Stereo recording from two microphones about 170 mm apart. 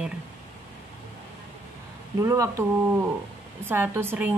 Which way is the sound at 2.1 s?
20° right (ahead or behind).